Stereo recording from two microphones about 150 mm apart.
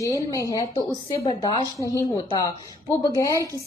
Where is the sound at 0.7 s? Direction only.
40° left (ahead or behind).